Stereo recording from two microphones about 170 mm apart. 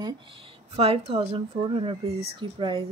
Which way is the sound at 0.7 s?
35° right (ahead or behind).